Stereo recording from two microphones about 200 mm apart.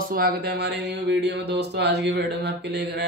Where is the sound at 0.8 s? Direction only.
60° right (ahead or behind).